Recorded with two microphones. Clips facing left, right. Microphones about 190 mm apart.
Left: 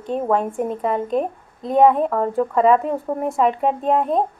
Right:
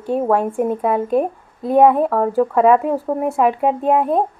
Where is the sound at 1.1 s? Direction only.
5° right (ahead or behind).